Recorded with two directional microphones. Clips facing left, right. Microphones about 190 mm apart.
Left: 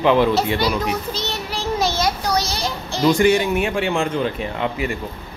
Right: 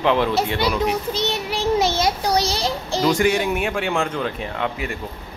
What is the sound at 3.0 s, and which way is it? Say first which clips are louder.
Speech: left 3 dB; 5° right (ahead or behind).